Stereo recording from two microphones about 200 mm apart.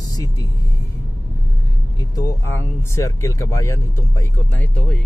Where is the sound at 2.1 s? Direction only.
15° left (ahead or behind).